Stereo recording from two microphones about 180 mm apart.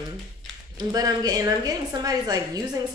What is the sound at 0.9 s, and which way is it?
A woman's voice, 20° right (ahead or behind).